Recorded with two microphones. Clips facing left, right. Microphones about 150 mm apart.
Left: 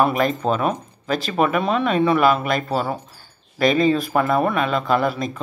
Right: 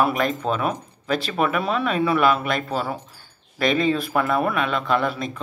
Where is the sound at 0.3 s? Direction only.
35° left (ahead or behind).